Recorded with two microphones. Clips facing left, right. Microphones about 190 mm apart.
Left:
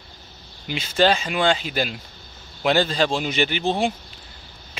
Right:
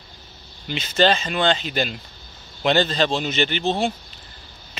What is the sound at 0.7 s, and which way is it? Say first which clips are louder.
Speech: even; 10° left (ahead or behind).